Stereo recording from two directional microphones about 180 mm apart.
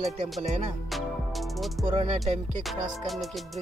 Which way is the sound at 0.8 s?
Centre (ahead or behind).